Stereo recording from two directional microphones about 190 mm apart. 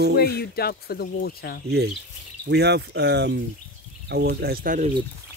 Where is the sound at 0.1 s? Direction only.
55° left (ahead or behind).